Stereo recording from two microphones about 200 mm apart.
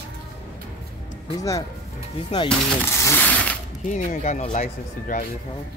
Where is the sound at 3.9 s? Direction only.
35° left (ahead or behind).